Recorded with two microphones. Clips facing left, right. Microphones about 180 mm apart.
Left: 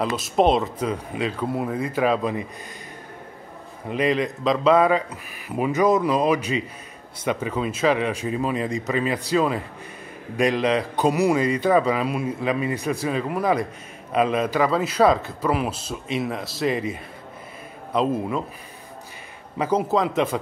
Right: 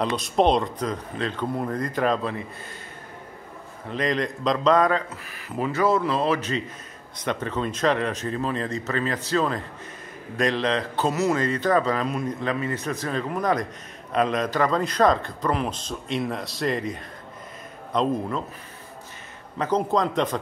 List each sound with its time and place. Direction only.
0.0 s a man's voice: 5° left (ahead or behind)
3.9 s a man's voice: 5° left (ahead or behind)
19.6 s a man's voice: 5° left (ahead or behind)